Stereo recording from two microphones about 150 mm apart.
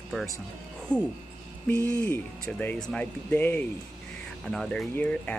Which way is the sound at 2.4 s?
5° left (ahead or behind).